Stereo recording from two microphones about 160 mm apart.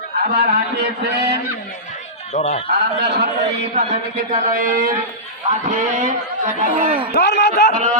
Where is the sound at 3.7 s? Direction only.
50° right (ahead or behind).